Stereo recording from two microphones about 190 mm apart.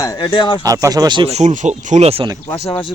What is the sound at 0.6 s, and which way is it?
Speech, 20° right (ahead or behind).